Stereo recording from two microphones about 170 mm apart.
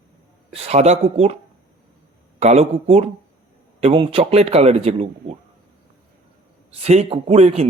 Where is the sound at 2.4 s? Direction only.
40° right (ahead or behind).